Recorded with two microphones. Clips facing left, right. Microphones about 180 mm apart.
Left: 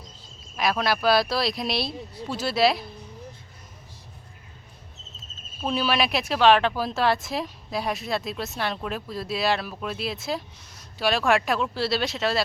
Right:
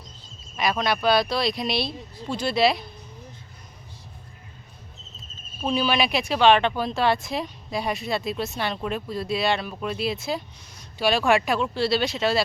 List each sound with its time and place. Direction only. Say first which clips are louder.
0.5 s speech: even; centre (ahead or behind)
5.6 s speech: right 1 dB; centre (ahead or behind)